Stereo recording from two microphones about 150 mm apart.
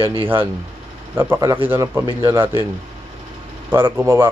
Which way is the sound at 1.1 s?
15° right (ahead or behind).